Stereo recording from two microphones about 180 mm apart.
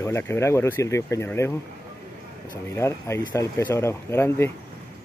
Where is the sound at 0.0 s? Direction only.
15° left (ahead or behind).